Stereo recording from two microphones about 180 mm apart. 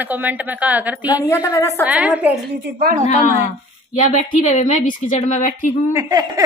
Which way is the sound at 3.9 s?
45° left (ahead or behind).